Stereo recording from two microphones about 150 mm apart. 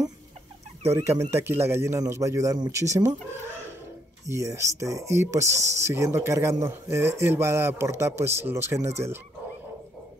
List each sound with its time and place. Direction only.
0.8 s speech: 20° right (ahead or behind)
4.3 s speech: 20° right (ahead or behind)